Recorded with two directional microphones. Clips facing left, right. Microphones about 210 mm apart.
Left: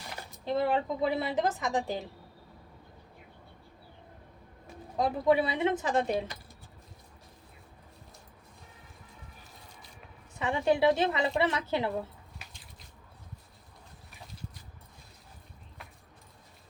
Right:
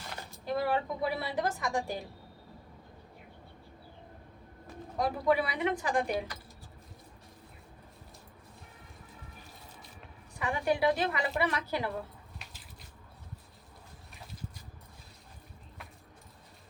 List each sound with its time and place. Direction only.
0.3 s a woman's voice: 25° left (ahead or behind)
4.9 s a woman's voice: 20° left (ahead or behind)
10.3 s a woman's voice: 25° left (ahead or behind)